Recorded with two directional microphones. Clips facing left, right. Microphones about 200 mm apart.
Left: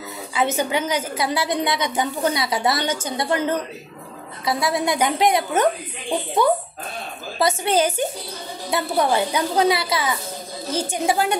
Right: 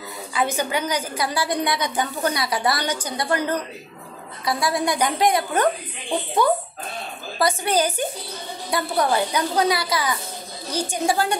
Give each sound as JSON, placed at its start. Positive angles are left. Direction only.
{"t": 0.3, "sound": "a woman's voice", "side_deg": 25}
{"t": 7.3, "sound": "a woman's voice", "side_deg": 25}